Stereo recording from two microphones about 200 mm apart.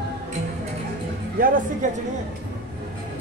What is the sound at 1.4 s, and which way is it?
Speech, 45° right (ahead or behind).